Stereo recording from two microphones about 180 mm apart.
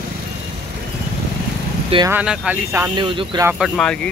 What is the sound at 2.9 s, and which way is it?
Speech, 25° right (ahead or behind).